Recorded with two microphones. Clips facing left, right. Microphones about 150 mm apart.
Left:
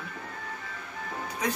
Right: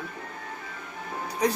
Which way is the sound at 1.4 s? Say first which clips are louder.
Right 6 dB; 35° right (ahead or behind).